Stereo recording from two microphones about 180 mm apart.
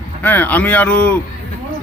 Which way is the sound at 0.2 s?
10° left (ahead or behind).